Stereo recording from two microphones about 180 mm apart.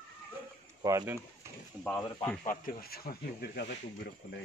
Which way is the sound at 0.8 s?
20° right (ahead or behind).